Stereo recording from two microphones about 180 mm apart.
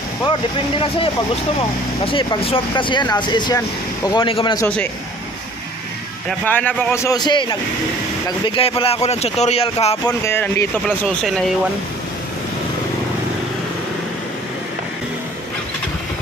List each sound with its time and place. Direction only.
0.3 s speech: 30° left (ahead or behind)
6.2 s speech: 10° left (ahead or behind); by 9.9 s 35° left (ahead or behind)
10.0 s speech: 15° left (ahead or behind)
11.1 s speech: centre (ahead or behind)